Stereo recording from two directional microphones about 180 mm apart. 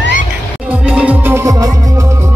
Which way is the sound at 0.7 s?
5° right (ahead or behind).